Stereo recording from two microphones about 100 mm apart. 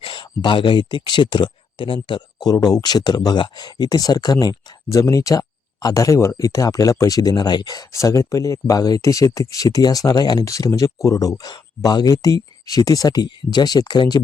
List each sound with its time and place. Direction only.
0.0 s speech: 55° left (ahead or behind)